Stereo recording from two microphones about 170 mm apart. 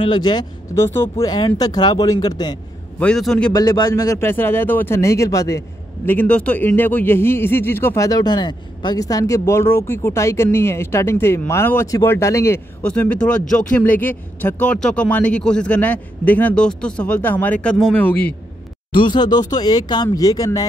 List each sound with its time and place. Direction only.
0.0 s speech: 25° left (ahead or behind)
0.8 s a man's voice: 15° left (ahead or behind)
3.0 s a man's voice: 5° left (ahead or behind)
3.5 s a man's voice: 25° left (ahead or behind)
6.0 s a man's voice: 10° left (ahead or behind)
18.9 s speech: 30° left (ahead or behind)